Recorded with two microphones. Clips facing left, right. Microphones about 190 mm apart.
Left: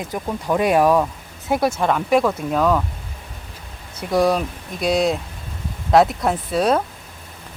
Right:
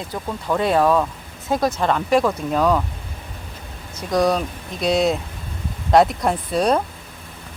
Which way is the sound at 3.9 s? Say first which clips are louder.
Left 1 dB; 5° left (ahead or behind).